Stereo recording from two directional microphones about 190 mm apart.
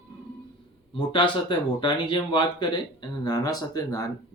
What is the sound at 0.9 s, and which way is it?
Speech, 25° left (ahead or behind).